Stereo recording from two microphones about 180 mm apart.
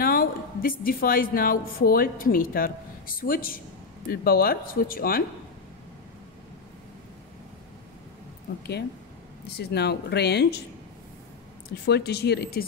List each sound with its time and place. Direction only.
0.0 s a woman's voice: 55° left (ahead or behind)
9.6 s speech: 65° left (ahead or behind)
11.8 s speech: 65° left (ahead or behind)